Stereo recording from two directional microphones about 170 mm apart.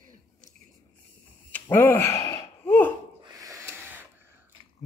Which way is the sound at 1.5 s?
10° left (ahead or behind).